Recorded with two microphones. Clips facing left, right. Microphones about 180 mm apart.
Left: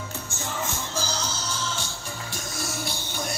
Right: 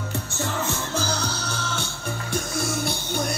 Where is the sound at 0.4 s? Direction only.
65° right (ahead or behind).